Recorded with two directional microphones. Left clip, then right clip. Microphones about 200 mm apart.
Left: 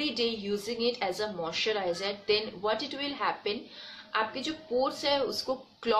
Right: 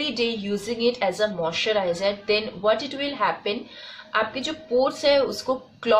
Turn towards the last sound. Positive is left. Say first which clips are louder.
# right 8 dB
turn(degrees=0)  # may be behind; listen again after turning